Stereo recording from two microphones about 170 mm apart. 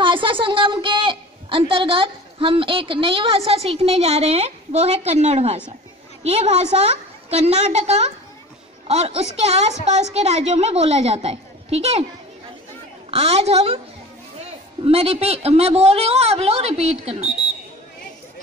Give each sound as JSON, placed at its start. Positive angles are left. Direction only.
{"t": 0.0, "sound": "a woman's voice", "side_deg": -30}
{"t": 13.1, "sound": "a woman's voice", "side_deg": -40}
{"t": 14.8, "sound": "a woman's voice", "side_deg": -35}